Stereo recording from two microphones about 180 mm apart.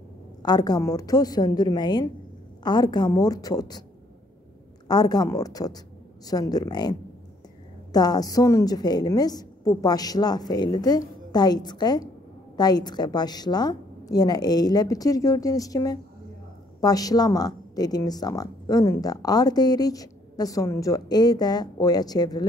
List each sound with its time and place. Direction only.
0.4 s speech: 20° left (ahead or behind)
4.8 s speech: 20° left (ahead or behind)